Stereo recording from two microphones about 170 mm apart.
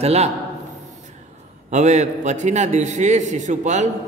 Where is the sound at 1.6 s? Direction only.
45° right (ahead or behind).